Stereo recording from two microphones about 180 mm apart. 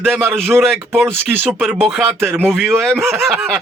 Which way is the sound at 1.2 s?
10° right (ahead or behind).